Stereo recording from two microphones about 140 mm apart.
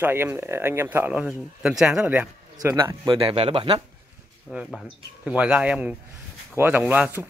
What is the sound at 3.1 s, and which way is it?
Speech, 45° right (ahead or behind).